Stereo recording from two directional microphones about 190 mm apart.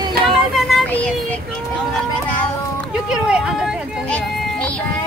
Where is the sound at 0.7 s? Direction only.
5° left (ahead or behind).